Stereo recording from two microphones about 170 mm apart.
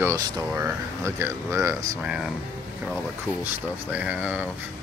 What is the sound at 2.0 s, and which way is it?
Speech, 5° right (ahead or behind).